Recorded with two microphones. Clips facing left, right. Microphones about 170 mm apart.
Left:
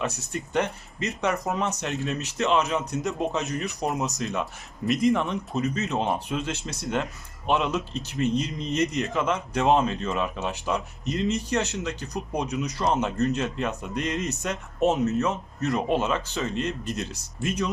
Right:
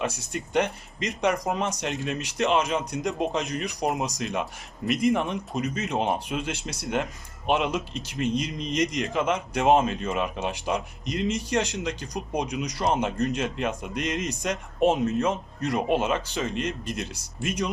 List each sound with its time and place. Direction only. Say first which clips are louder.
0.0 s speech: even; 15° right (ahead or behind)